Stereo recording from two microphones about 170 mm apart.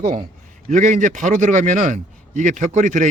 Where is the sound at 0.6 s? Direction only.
45° right (ahead or behind).